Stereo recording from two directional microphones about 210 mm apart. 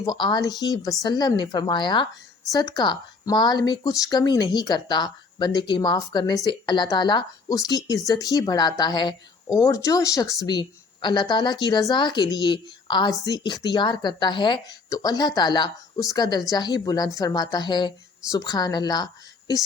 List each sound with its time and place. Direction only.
0.0 s speech: 20° left (ahead or behind)